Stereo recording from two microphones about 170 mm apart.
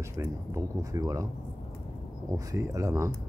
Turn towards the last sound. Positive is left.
turn(degrees=-20)  # may be behind; listen again after turning